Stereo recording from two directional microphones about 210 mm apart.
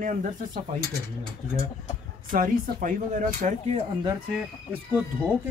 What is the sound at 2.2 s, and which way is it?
Speech, 40° right (ahead or behind).